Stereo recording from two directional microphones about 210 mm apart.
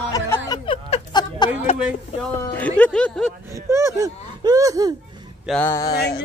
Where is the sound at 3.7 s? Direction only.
15° right (ahead or behind).